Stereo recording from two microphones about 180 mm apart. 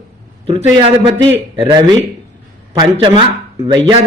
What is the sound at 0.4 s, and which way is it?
A man's voice, 30° right (ahead or behind).